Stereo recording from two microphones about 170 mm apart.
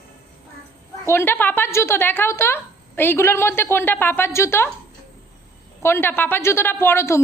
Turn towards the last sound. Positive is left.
turn(degrees=15)  # may be behind; listen again after turning